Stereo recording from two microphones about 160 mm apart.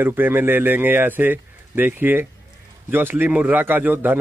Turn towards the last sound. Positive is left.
turn(degrees=-10)  # may be behind; listen again after turning